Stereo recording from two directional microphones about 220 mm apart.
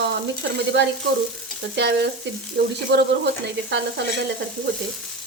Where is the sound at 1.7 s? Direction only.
50° right (ahead or behind).